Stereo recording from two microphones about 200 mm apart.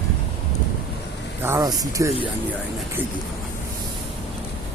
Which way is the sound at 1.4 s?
15° right (ahead or behind).